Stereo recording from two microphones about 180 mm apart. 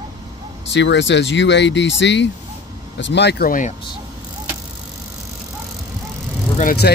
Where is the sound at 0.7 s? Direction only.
80° left; by 3.8 s 45° left (ahead or behind).